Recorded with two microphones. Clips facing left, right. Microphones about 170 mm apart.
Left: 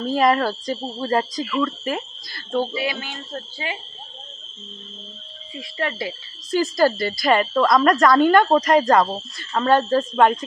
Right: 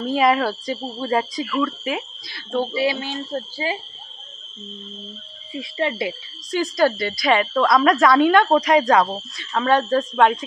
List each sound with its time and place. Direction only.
0.1 s speech: centre (ahead or behind)
2.7 s speech: 25° right (ahead or behind)
5.5 s speech: 20° right (ahead or behind)
6.5 s speech: 5° left (ahead or behind)